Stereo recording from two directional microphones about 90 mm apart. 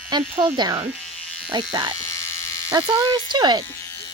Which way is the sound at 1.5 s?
65° right (ahead or behind).